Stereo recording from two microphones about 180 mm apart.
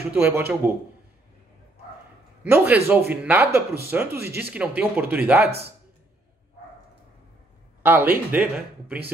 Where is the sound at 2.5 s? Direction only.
10° right (ahead or behind).